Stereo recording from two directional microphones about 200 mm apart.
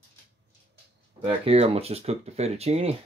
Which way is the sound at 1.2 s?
30° right (ahead or behind).